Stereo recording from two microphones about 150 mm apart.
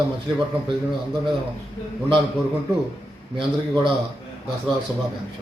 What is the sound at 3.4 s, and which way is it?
Speech, 30° right (ahead or behind).